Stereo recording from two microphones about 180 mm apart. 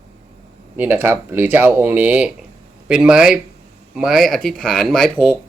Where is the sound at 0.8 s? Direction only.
10° right (ahead or behind).